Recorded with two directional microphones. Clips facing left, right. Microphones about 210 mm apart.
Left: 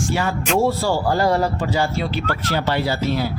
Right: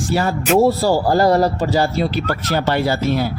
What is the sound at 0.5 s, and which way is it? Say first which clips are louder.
Speech: right 5 dB; 40° right (ahead or behind).